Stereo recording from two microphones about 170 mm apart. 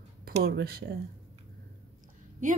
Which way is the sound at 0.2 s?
70° right (ahead or behind).